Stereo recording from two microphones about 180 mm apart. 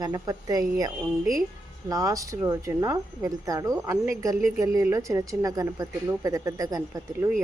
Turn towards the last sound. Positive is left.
turn(degrees=-20)  # may be behind; listen again after turning